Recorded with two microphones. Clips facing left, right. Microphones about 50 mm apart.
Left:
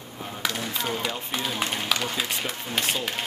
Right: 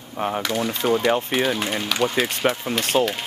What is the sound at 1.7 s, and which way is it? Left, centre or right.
Speech, centre.